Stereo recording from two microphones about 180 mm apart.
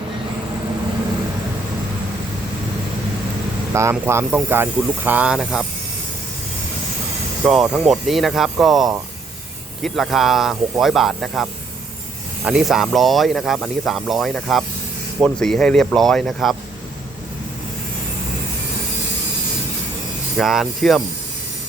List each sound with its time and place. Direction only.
3.7 s speech: 15° right (ahead or behind)
7.4 s speech: 5° right (ahead or behind)
12.5 s speech: 5° right (ahead or behind)
20.4 s speech: centre (ahead or behind)